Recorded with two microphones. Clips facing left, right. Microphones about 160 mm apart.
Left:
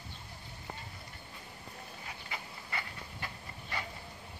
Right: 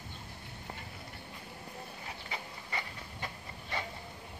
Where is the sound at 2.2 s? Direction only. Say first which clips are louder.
Right 1 dB; 20° right (ahead or behind).